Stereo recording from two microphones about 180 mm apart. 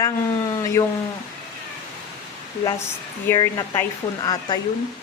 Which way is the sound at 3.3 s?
20° left (ahead or behind).